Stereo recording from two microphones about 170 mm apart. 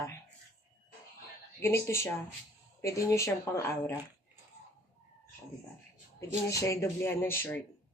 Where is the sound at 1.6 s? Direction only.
15° left (ahead or behind).